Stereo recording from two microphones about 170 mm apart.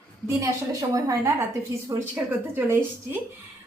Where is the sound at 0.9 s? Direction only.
20° right (ahead or behind).